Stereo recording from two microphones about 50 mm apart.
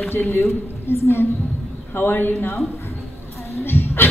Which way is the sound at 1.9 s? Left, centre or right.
Left.